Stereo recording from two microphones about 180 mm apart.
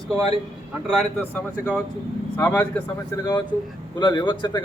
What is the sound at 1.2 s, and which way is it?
Speech, 10° left (ahead or behind).